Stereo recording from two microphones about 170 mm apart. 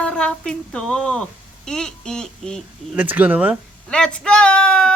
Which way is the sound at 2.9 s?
10° right (ahead or behind).